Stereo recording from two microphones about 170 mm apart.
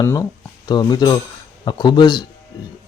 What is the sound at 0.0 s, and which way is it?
A man's voice, 20° left (ahead or behind).